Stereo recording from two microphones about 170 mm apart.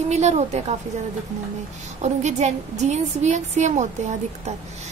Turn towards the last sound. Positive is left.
turn(degrees=-45)  # may be behind; listen again after turning